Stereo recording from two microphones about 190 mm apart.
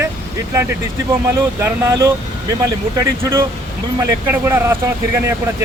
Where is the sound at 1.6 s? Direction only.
10° right (ahead or behind).